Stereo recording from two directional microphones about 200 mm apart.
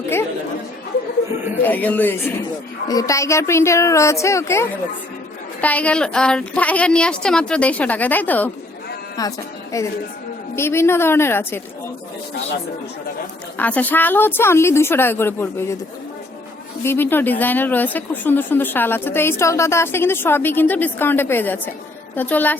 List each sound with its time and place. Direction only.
1.6 s speech: 10° left (ahead or behind)
9.2 s a woman's voice: 20° left (ahead or behind)
13.6 s speech: 10° left (ahead or behind)
16.8 s speech: 10° left (ahead or behind)